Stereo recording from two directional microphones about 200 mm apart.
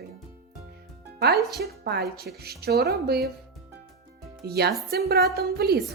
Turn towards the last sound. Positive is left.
turn(degrees=-50)  # may be behind; listen again after turning